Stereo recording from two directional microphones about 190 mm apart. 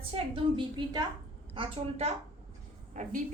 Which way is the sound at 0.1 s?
25° right (ahead or behind).